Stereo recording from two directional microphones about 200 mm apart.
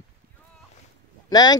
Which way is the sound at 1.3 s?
20° left (ahead or behind).